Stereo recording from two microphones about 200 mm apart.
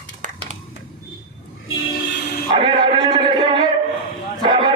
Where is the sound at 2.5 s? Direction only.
25° right (ahead or behind).